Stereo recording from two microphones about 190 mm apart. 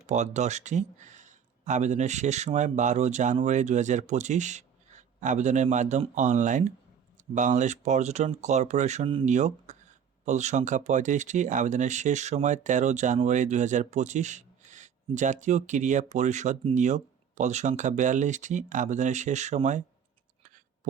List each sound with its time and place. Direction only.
0.1 s speech: 35° right (ahead or behind)